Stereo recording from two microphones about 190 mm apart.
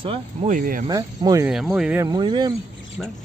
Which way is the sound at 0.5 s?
45° right (ahead or behind).